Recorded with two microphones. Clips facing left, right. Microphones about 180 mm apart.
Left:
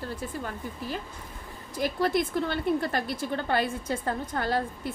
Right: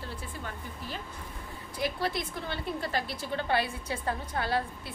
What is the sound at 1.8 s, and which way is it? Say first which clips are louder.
A woman's voice: left 6 dB; 50° left (ahead or behind).